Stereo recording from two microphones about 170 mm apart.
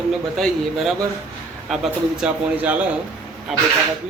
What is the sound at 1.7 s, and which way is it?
A man's voice, 5° right (ahead or behind).